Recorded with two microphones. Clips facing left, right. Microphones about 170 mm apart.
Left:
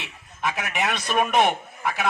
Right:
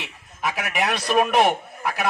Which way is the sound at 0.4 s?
5° right (ahead or behind).